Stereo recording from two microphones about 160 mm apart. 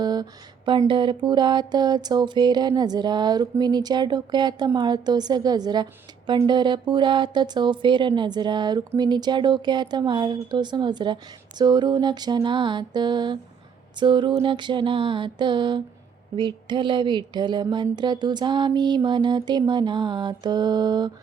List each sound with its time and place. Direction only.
0.0 s a woman's voice: 25° right (ahead or behind)